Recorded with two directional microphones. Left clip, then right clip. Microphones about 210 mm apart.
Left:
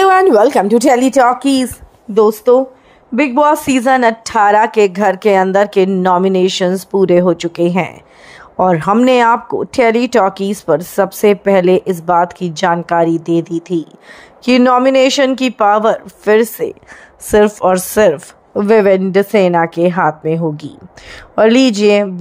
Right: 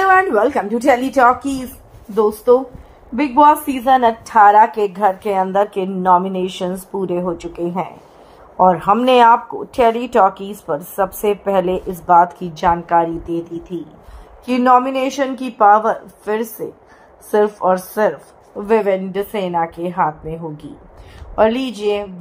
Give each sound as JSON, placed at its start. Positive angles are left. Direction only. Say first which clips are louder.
{"t": 0.0, "sound": "speech", "louder": "left 5 dB", "side_deg": 55}